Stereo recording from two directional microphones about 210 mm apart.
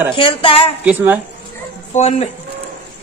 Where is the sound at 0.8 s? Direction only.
10° right (ahead or behind).